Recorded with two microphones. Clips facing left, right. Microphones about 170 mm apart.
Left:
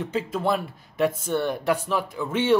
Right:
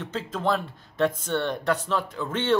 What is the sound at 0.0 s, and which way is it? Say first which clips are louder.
Speech: left 2 dB; 10° left (ahead or behind).